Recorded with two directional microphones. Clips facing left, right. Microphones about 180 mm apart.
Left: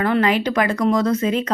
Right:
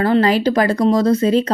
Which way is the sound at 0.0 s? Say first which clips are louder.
Right 4 dB; 35° right (ahead or behind).